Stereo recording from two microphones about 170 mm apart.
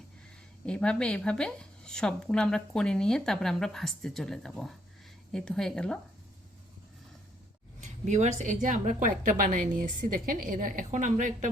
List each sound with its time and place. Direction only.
0.6 s speech: 5° left (ahead or behind)
7.8 s a woman's voice: 45° right (ahead or behind)